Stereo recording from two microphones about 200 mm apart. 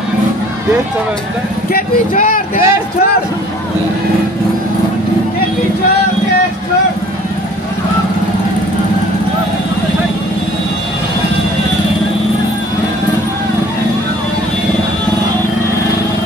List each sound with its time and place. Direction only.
1.7 s speech: 45° left (ahead or behind)